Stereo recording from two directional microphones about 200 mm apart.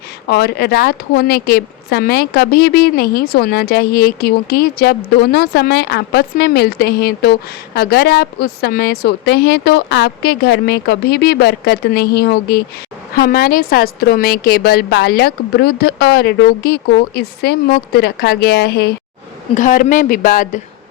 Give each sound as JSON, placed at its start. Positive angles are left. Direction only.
{"t": 0.3, "sound": "a woman's voice", "side_deg": 55}
{"t": 19.5, "sound": "a woman's voice", "side_deg": 40}